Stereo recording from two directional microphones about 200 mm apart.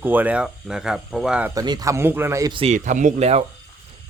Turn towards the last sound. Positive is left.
turn(degrees=-30)  # may be behind; listen again after turning